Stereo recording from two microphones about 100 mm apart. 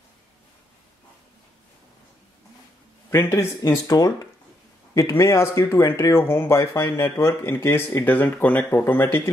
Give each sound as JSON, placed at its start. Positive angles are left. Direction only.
{"t": 3.1, "sound": "speech", "side_deg": 30}
{"t": 3.8, "sound": "speech", "side_deg": 40}